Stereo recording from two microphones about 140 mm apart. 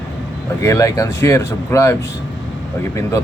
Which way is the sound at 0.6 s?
20° left (ahead or behind).